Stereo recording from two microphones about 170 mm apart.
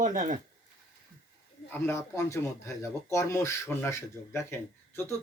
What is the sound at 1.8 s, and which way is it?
Speech, 15° left (ahead or behind).